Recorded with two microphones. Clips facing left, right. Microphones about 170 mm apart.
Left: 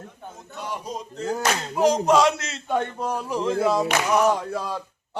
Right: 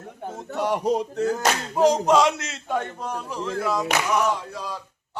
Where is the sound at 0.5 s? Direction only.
70° right (ahead or behind).